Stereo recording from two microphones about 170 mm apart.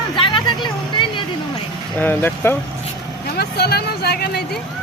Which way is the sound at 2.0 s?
10° left (ahead or behind).